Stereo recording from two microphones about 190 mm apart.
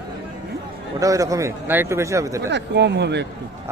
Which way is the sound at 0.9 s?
15° right (ahead or behind).